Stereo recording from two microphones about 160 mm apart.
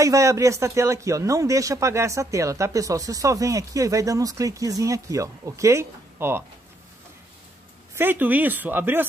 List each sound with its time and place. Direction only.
0.0 s a man's voice: 20° right (ahead or behind)
7.9 s speech: 10° right (ahead or behind)